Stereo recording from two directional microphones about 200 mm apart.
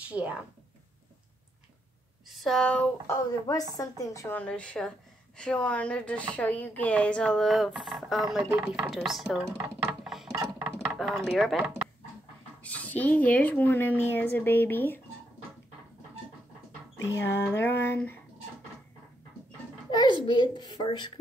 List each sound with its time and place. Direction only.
0.1 s speech: 5° right (ahead or behind)
2.2 s speech: centre (ahead or behind)
9.6 s a sound: 5° right (ahead or behind)
10.3 s a sound: 15° right (ahead or behind)
11.2 s speech: centre (ahead or behind)
17.0 s speech: 15° left (ahead or behind)
19.9 s a child's voice: 20° left (ahead or behind)